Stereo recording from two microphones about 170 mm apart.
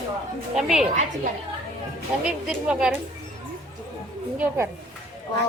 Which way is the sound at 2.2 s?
5° right (ahead or behind).